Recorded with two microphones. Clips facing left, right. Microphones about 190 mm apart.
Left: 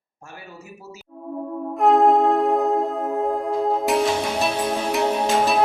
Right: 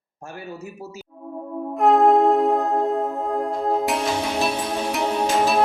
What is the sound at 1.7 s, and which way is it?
Music, centre (ahead or behind).